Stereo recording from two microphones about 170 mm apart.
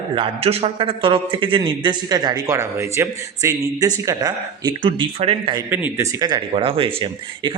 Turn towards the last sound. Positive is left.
turn(degrees=-30)  # may be behind; listen again after turning